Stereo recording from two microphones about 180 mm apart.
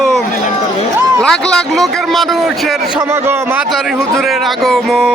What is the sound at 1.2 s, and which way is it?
Speech, 5° left (ahead or behind).